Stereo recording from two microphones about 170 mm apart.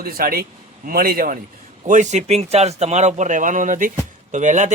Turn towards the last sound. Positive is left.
turn(degrees=-45)  # may be behind; listen again after turning